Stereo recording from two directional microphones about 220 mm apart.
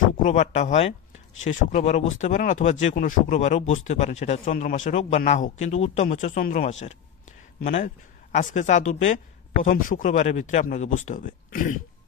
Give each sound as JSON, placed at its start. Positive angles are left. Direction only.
{"t": 0.2, "sound": "speech", "side_deg": 30}